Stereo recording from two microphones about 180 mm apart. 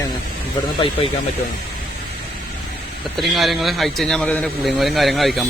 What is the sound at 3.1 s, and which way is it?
A man's voice, centre (ahead or behind).